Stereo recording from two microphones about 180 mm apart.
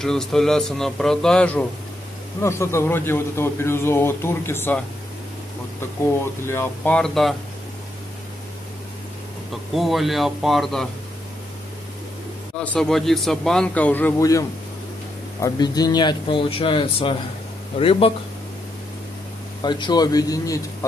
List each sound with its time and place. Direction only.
0.0 s a man's voice: 5° left (ahead or behind)
6.4 s a man's voice: 15° left (ahead or behind)
9.5 s speech: centre (ahead or behind)
12.5 s speech: 5° left (ahead or behind)
15.4 s speech: 20° left (ahead or behind)
19.6 s speech: 25° left (ahead or behind)